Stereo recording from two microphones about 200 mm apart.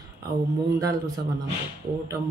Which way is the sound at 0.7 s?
15° right (ahead or behind).